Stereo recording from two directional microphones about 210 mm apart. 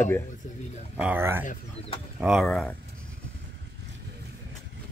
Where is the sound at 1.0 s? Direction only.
10° right (ahead or behind).